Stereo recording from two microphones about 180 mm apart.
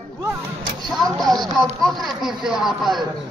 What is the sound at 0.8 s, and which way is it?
Speech, centre (ahead or behind).